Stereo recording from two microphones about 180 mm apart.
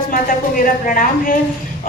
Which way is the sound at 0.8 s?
50° left (ahead or behind).